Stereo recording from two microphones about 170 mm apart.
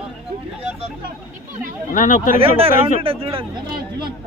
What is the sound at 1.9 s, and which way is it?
Speech, 50° left (ahead or behind).